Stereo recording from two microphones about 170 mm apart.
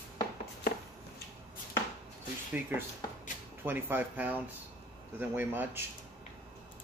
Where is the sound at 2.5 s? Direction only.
10° right (ahead or behind).